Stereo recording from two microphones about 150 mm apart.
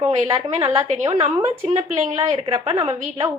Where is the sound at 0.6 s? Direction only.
45° right (ahead or behind).